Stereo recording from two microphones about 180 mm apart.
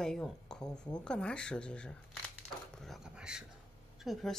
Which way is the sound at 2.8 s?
Centre (ahead or behind).